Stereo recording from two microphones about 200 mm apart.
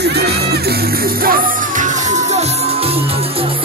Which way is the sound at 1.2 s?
45° right (ahead or behind).